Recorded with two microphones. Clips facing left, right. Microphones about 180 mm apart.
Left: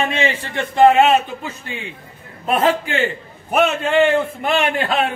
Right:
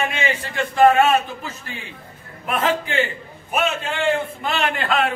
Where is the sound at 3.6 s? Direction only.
65° left (ahead or behind).